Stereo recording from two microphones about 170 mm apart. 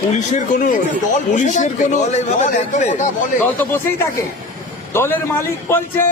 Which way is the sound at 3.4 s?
10° left (ahead or behind).